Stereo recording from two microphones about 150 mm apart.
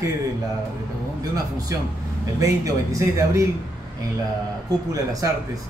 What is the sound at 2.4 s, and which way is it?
Speech, 20° right (ahead or behind).